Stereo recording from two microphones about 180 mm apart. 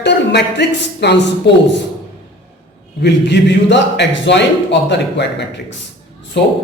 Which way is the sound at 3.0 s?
75° left (ahead or behind).